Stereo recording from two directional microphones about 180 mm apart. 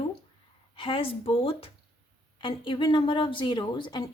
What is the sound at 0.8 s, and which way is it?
A woman's voice, 30° left (ahead or behind).